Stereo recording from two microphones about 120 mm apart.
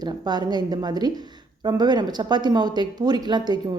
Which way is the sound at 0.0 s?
35° right (ahead or behind).